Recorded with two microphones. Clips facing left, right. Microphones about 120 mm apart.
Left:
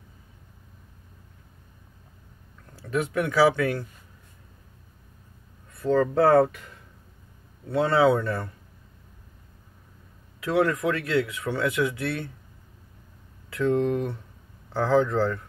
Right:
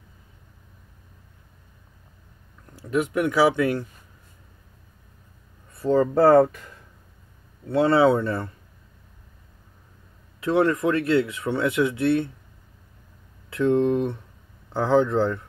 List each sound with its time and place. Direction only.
2.8 s speech: 15° right (ahead or behind)
5.8 s speech: 15° right (ahead or behind)
7.7 s speech: 30° right (ahead or behind)
10.4 s speech: 25° right (ahead or behind)
13.5 s speech: 25° right (ahead or behind)